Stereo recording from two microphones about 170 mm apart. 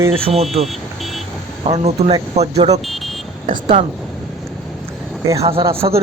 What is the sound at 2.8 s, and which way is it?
Vehicle, centre (ahead or behind).